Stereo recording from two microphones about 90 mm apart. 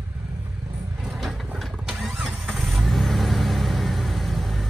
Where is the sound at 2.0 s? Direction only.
Centre (ahead or behind).